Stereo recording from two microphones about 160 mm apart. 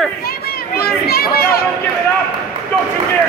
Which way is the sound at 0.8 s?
75° left (ahead or behind).